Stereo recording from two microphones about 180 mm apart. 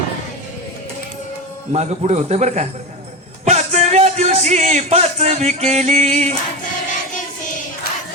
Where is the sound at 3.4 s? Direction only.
40° right (ahead or behind).